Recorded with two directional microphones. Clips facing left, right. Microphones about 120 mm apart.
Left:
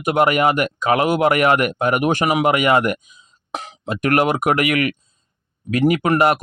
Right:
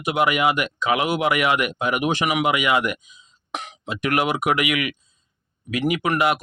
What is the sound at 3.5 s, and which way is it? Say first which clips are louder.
Throat clearing: left 2 dB; 35° left (ahead or behind).